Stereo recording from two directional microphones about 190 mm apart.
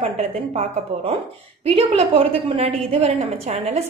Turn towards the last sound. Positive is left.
turn(degrees=-35)  # may be behind; listen again after turning